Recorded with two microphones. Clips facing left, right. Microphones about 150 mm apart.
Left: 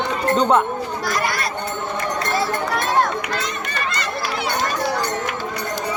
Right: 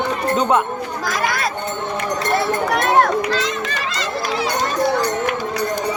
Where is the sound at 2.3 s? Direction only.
65° right (ahead or behind); by 4.5 s 90° right.